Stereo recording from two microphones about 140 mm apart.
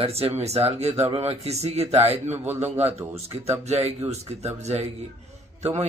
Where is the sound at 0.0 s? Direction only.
45° right (ahead or behind).